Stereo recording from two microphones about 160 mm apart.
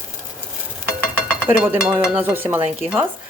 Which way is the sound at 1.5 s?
10° right (ahead or behind).